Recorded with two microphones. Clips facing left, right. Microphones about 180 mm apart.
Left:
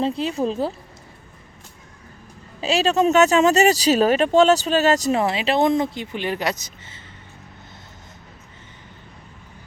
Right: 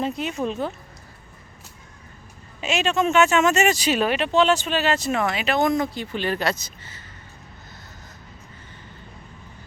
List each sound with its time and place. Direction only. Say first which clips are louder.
0.0 s speech: left 4 dB; 30° left (ahead or behind)
2.6 s speech: left 4 dB; 35° left (ahead or behind)